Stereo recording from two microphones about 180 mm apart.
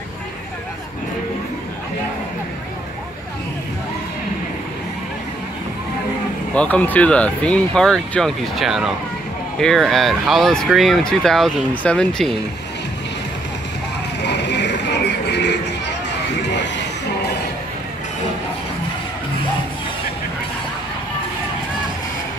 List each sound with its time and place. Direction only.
6.5 s speech: 10° left (ahead or behind)
14.2 s music: 70° left (ahead or behind)